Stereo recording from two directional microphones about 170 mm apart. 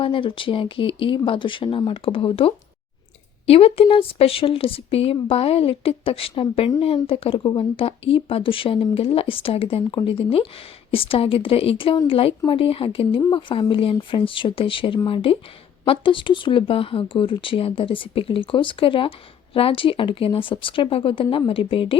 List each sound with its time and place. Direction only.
0.0 s speech: 30° left (ahead or behind)